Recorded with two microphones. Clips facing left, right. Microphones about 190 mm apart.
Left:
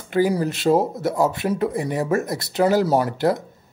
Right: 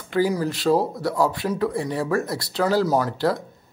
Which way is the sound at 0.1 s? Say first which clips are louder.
Left 2 dB; 20° left (ahead or behind).